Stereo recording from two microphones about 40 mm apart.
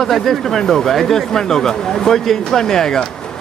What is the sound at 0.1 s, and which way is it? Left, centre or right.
Speech, centre.